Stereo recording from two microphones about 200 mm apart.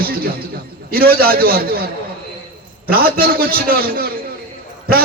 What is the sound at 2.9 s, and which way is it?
A man's voice, 50° right (ahead or behind).